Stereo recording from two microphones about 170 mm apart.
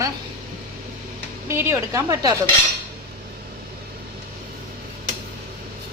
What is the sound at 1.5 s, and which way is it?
Speech, 15° right (ahead or behind).